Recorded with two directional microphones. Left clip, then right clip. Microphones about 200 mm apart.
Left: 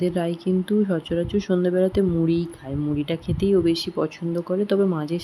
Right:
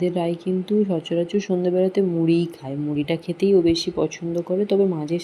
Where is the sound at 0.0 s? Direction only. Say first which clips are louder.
Right 1 dB; 10° left (ahead or behind).